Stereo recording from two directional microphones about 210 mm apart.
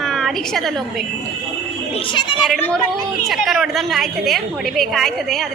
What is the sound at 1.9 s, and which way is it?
Speech, 25° left (ahead or behind).